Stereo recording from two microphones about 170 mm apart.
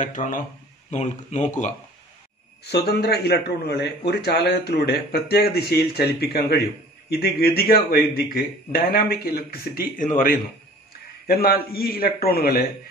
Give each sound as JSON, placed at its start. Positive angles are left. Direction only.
{"t": 0.0, "sound": "speech", "side_deg": 50}
{"t": 2.6, "sound": "a man's voice", "side_deg": 75}
{"t": 11.2, "sound": "speech", "side_deg": 65}